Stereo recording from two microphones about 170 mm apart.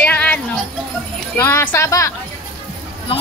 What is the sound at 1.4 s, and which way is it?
Speech, 15° left (ahead or behind).